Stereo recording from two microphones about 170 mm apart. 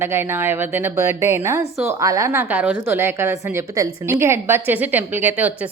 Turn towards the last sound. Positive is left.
turn(degrees=-10)  # may be behind; listen again after turning